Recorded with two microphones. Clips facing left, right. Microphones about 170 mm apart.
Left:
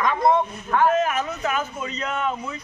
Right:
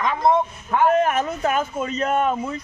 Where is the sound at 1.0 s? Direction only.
50° right (ahead or behind).